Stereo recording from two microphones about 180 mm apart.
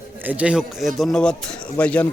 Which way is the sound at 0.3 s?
5° right (ahead or behind).